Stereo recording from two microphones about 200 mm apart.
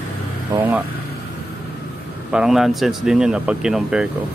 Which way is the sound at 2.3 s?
5° right (ahead or behind).